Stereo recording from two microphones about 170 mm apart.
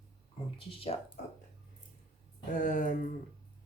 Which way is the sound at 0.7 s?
35° left (ahead or behind).